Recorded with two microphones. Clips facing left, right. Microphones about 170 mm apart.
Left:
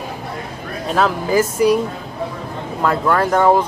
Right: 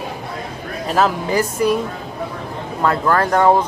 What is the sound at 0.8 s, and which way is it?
Speech, centre (ahead or behind).